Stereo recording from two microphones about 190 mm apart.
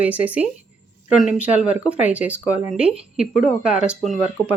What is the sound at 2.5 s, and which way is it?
Speech, 40° left (ahead or behind).